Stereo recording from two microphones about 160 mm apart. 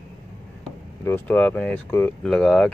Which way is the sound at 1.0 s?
10° left (ahead or behind).